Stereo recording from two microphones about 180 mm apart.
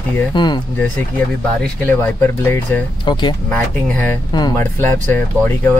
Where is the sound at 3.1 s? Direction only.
25° left (ahead or behind).